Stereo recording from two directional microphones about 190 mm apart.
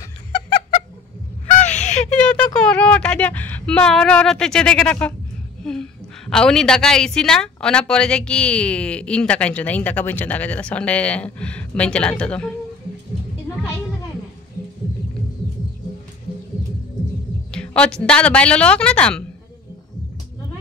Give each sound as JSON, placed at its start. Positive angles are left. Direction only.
{"t": 1.6, "sound": "a sound", "side_deg": 40}
{"t": 2.1, "sound": "a woman's voice", "side_deg": 10}
{"t": 17.5, "sound": "a woman's voice", "side_deg": 5}